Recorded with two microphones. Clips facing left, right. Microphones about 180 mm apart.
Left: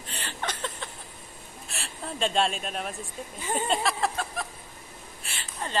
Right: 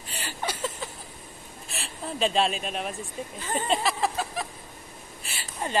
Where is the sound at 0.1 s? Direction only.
10° right (ahead or behind).